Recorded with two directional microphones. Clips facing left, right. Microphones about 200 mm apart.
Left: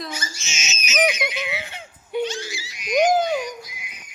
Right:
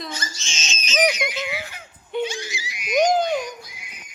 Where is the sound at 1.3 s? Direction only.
20° left (ahead or behind).